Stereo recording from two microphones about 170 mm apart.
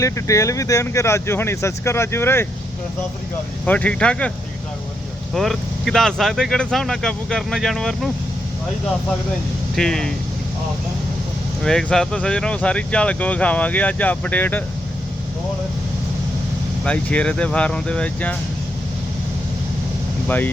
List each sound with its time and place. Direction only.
0.0 s speech: 20° left (ahead or behind)
3.7 s speech: 10° left (ahead or behind)
5.3 s speech: centre (ahead or behind)
9.7 s speech: 5° left (ahead or behind)
11.6 s speech: 5° left (ahead or behind)
16.8 s speech: 5° left (ahead or behind)
20.2 s speech: 10° left (ahead or behind)